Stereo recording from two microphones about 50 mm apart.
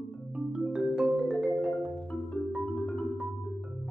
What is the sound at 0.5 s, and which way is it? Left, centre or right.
Music, centre.